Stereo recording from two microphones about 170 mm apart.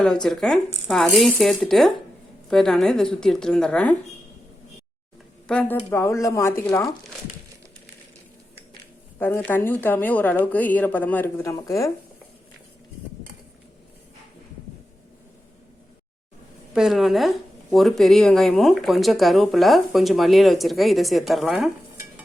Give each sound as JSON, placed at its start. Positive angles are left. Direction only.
{"t": 0.0, "sound": "speech", "side_deg": 5}
{"t": 5.5, "sound": "speech", "side_deg": 10}
{"t": 9.1, "sound": "speech", "side_deg": 15}
{"t": 16.7, "sound": "speech", "side_deg": 0}